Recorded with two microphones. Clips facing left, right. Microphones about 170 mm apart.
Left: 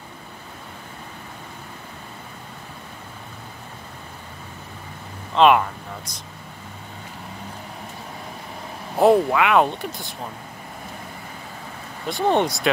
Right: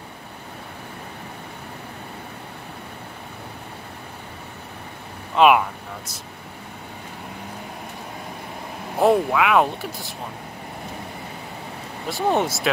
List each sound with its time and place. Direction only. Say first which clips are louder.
5.3 s a sound: even; 5° right (ahead or behind)
8.9 s speech: left 2 dB; centre (ahead or behind)
12.1 s speech: left 1 dB; 5° right (ahead or behind)